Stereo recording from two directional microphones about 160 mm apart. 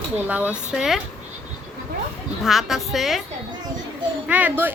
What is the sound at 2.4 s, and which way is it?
Speech, centre (ahead or behind).